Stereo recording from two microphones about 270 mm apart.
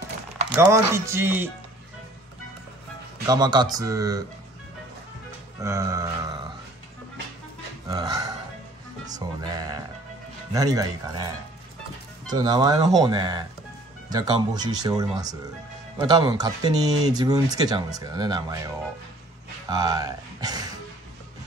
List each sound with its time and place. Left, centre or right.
0.5 s speech: centre
3.3 s speech: centre
5.6 s speech: centre
7.9 s speech: centre
19.7 s speech: centre